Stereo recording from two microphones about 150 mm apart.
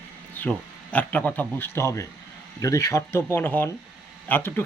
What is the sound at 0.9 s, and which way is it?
A man's voice, 10° left (ahead or behind).